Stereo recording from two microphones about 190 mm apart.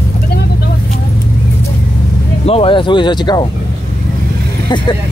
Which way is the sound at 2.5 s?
30° left (ahead or behind).